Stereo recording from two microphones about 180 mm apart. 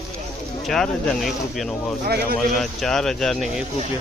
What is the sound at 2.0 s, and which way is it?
Speech, 60° right (ahead or behind).